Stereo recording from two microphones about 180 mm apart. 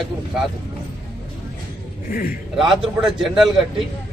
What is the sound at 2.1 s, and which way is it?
Speech, 50° left (ahead or behind).